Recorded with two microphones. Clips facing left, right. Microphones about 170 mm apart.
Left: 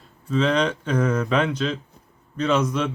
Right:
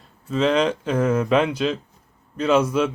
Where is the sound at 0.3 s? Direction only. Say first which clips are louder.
Right 2 dB; 5° right (ahead or behind).